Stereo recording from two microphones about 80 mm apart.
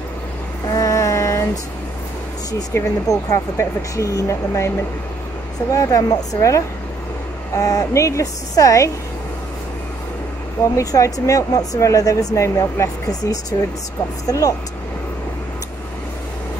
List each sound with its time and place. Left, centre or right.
0.7 s female singing: left
2.7 s speech: left
3.1 s speech: left
10.8 s speech: left